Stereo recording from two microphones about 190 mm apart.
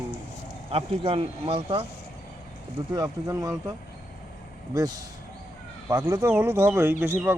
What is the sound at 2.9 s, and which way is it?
Speech, 20° right (ahead or behind).